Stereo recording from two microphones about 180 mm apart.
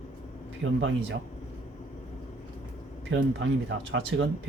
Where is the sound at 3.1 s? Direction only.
90° right.